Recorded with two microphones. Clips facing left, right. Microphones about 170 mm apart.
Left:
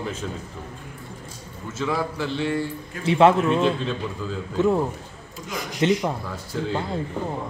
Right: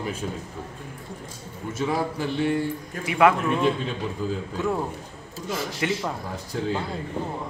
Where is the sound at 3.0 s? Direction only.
25° left (ahead or behind).